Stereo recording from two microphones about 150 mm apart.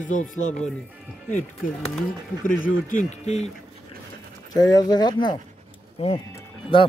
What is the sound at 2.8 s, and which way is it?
Speech, 55° left (ahead or behind).